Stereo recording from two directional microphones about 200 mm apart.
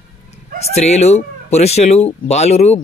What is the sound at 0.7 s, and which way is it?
Speech, 35° left (ahead or behind).